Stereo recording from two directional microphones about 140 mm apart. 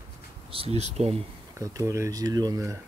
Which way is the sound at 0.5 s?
45° right (ahead or behind).